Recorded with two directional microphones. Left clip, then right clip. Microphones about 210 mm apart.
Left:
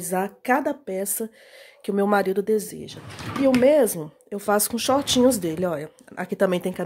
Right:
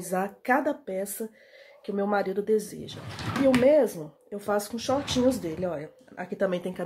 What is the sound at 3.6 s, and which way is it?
Speech, 50° left (ahead or behind).